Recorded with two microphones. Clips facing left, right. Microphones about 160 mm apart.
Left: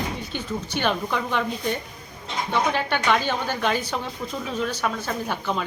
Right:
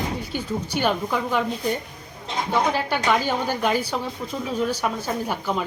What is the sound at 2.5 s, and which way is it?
Speech, 5° right (ahead or behind).